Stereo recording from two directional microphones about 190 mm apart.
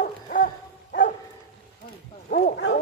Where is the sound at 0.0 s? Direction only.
45° left (ahead or behind).